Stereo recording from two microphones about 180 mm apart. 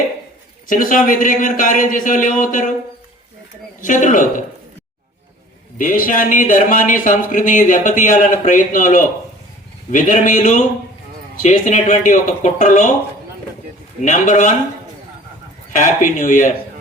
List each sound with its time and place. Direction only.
0.7 s speech: 50° left (ahead or behind)
3.8 s speech: 45° left (ahead or behind)
5.7 s speech: 50° left (ahead or behind)
14.0 s speech: 45° left (ahead or behind)
15.7 s speech: 45° left (ahead or behind)